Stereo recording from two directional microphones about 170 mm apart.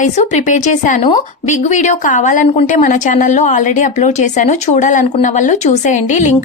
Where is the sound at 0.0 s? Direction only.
45° left (ahead or behind).